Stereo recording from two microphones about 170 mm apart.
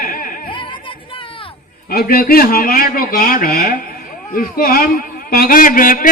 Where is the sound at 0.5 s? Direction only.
30° left (ahead or behind).